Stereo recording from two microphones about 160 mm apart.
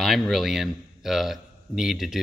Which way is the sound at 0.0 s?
Centre (ahead or behind).